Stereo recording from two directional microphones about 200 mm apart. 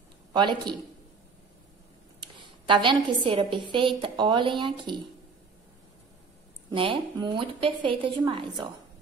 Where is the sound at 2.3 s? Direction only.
25° right (ahead or behind).